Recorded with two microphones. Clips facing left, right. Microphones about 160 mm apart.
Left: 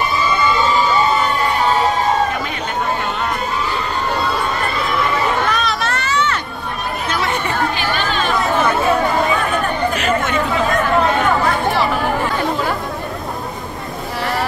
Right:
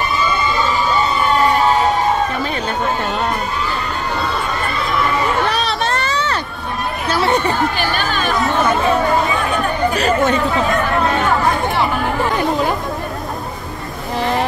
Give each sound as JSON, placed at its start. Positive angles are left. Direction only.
{"t": 5.5, "sound": "a sound", "side_deg": -35}
{"t": 7.1, "sound": "chatter", "side_deg": -30}
{"t": 9.9, "sound": "chatter", "side_deg": -35}